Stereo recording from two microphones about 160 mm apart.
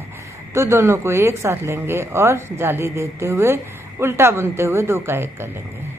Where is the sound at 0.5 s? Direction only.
15° right (ahead or behind).